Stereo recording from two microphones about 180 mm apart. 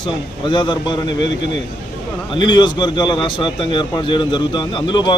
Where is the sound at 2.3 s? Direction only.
25° left (ahead or behind).